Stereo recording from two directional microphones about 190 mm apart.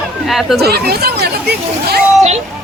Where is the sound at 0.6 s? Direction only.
55° right (ahead or behind).